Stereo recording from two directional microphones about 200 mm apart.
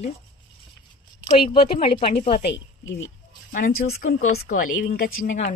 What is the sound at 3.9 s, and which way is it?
A woman's voice, 40° left (ahead or behind).